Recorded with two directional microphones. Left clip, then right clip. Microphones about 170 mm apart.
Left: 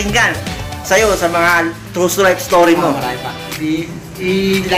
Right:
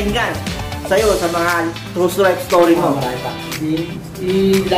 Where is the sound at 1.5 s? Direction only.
15° left (ahead or behind).